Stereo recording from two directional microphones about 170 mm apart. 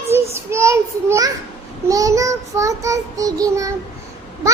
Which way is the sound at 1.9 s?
20° right (ahead or behind).